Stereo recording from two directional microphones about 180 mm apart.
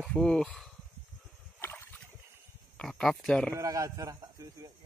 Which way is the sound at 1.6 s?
15° left (ahead or behind).